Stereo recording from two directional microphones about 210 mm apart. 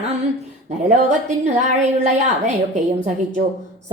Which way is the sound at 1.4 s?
35° right (ahead or behind).